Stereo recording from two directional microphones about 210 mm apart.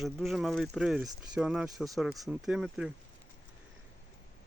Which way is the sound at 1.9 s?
Centre (ahead or behind).